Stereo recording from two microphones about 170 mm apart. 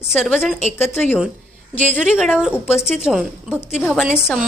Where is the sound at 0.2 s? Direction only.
Centre (ahead or behind).